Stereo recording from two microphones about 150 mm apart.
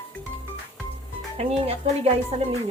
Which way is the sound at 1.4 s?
45° right (ahead or behind).